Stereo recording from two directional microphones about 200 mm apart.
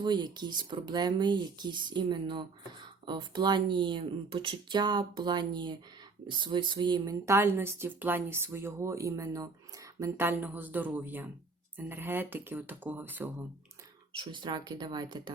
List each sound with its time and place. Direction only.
0.0 s speech: 20° right (ahead or behind)
14.2 s speech: 25° right (ahead or behind)